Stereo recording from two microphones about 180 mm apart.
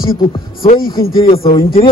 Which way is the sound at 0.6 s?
55° left (ahead or behind).